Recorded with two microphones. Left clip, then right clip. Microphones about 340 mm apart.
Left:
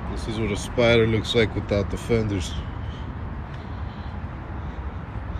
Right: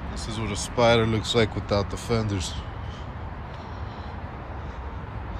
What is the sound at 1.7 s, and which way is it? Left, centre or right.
Speech, right.